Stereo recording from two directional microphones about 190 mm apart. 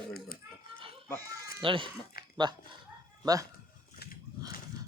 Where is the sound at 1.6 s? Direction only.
25° right (ahead or behind).